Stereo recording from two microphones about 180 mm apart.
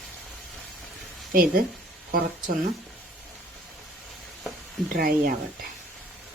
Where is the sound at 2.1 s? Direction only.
55° right (ahead or behind).